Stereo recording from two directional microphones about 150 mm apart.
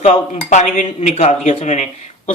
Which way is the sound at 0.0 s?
50° left (ahead or behind).